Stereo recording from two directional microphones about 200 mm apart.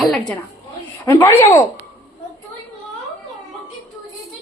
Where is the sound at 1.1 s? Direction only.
15° left (ahead or behind).